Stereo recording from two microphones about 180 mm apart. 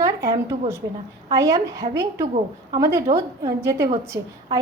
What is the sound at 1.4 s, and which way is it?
A woman's voice, 15° right (ahead or behind).